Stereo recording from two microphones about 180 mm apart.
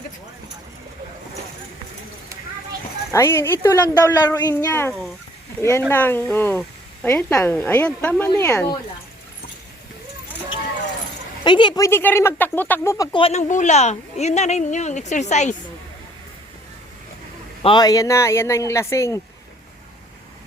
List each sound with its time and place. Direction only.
3.1 s speech: 15° left (ahead or behind)
11.4 s speech: 25° left (ahead or behind)
13.1 s a woman's voice: 35° left (ahead or behind)
17.6 s speech: 25° left (ahead or behind)